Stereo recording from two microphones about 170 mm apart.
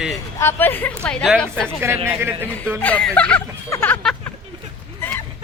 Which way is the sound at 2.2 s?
10° right (ahead or behind).